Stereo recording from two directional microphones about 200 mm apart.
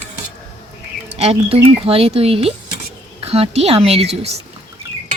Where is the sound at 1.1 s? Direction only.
30° right (ahead or behind).